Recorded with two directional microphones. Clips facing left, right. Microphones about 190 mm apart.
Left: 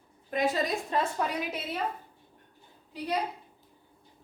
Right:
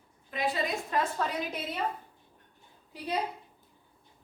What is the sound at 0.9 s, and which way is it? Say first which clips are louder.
Speech: left 1 dB; 30° left (ahead or behind).